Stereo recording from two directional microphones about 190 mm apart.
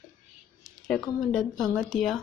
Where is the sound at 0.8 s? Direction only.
Centre (ahead or behind).